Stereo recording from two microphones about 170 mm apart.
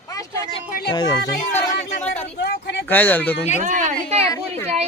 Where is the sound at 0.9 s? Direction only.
25° left (ahead or behind).